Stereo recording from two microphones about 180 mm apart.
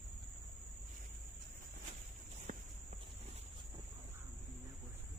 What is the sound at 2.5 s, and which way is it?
Walk, 45° right (ahead or behind).